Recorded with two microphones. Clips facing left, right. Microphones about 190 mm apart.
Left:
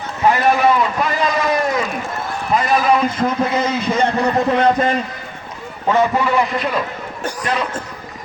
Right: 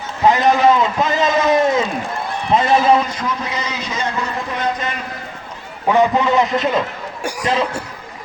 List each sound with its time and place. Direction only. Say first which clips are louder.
0.3 s a man's voice: right 1 dB; 20° right (ahead or behind)
3.2 s a man's voice: left 6 dB; 50° left (ahead or behind)
5.9 s a man's voice: right 2 dB; 15° right (ahead or behind)